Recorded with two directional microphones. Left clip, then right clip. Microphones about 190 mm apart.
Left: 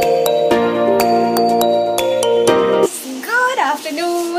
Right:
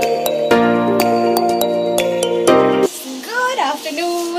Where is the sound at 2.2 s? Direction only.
Centre (ahead or behind).